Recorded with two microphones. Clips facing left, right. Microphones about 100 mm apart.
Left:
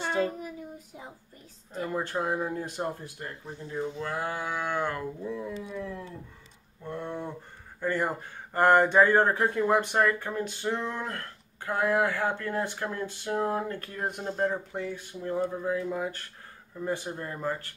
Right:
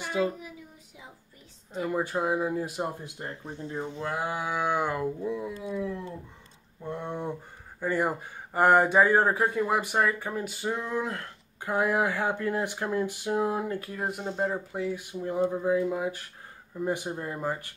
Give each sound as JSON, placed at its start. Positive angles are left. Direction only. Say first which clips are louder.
{"t": 0.0, "sound": "child singing", "louder": "even", "side_deg": 45}
{"t": 1.8, "sound": "speech", "louder": "right 2 dB", "side_deg": -15}
{"t": 3.2, "sound": "speech", "louder": "right 2 dB", "side_deg": -25}